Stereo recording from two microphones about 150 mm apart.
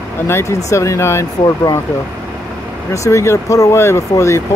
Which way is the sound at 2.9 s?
20° left (ahead or behind).